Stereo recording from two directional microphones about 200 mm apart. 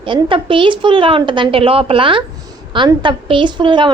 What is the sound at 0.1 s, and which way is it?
A woman's voice, 25° right (ahead or behind).